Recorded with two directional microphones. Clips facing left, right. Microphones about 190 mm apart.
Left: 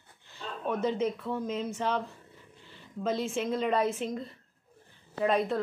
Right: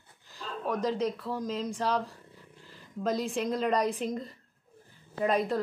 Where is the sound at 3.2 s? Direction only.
Centre (ahead or behind).